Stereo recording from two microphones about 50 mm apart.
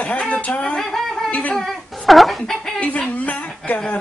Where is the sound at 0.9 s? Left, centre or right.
Centre.